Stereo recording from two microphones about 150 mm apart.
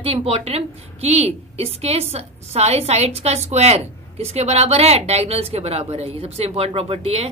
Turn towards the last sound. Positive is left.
turn(degrees=-40)  # may be behind; listen again after turning